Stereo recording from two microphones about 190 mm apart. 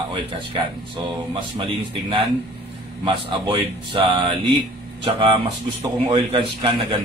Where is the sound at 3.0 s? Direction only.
25° right (ahead or behind).